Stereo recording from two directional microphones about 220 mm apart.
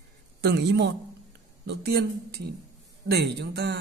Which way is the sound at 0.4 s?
50° right (ahead or behind).